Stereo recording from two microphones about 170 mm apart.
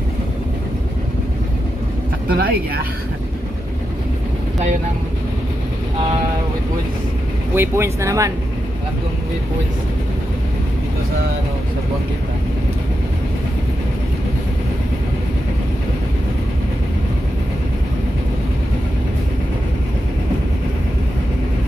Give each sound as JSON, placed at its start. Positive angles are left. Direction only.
{"t": 2.3, "sound": "speech", "side_deg": -60}
{"t": 7.5, "sound": "speech", "side_deg": -15}